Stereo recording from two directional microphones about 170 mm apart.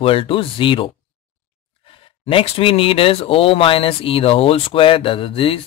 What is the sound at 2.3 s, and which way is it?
Speech, 30° left (ahead or behind).